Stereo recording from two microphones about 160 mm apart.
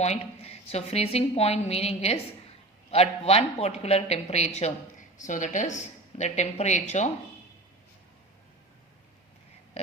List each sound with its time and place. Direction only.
0.0 s a woman's voice: 40° left (ahead or behind)